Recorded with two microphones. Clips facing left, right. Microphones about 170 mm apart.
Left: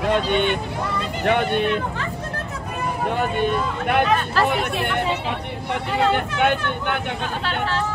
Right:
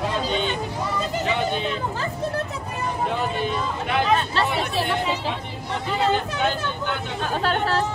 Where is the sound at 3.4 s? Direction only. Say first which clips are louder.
Left 4 dB; 60° left (ahead or behind).